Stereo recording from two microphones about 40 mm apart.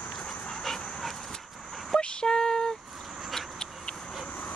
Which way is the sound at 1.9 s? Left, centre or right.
Centre.